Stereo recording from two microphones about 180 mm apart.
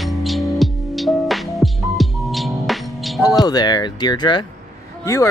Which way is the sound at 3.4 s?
25° left (ahead or behind).